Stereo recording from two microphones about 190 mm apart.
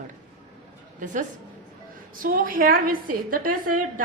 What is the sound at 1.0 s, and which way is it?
A woman's voice, 40° right (ahead or behind).